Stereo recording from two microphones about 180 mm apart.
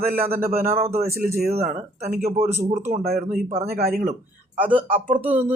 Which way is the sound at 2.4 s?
15° right (ahead or behind).